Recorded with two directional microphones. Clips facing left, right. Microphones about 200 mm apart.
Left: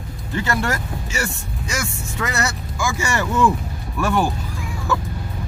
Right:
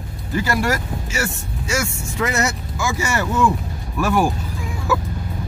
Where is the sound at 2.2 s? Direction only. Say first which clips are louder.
Right 3 dB; 20° right (ahead or behind).